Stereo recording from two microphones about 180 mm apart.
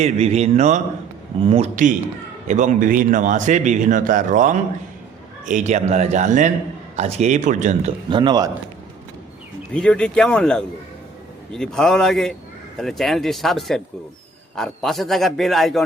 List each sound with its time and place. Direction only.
0.0 s a man's voice: 35° right (ahead or behind)
8.1 s a man's voice: 25° right (ahead or behind)
9.7 s a man's voice: 5° left (ahead or behind)